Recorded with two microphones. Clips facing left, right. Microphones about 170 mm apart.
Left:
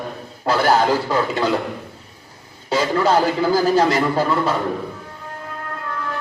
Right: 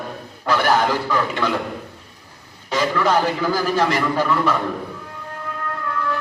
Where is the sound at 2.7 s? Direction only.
30° left (ahead or behind).